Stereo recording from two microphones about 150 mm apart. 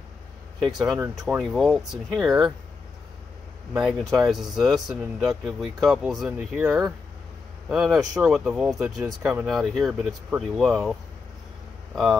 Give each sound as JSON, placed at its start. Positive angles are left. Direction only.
{"t": 0.9, "sound": "speech", "side_deg": -15}
{"t": 1.2, "sound": "speech", "side_deg": 0}
{"t": 3.7, "sound": "speech", "side_deg": -5}
{"t": 8.0, "sound": "speech", "side_deg": -20}
{"t": 8.3, "sound": "speech", "side_deg": -5}